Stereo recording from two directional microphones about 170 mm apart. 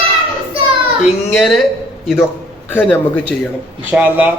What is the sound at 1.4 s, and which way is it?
Speech, centre (ahead or behind).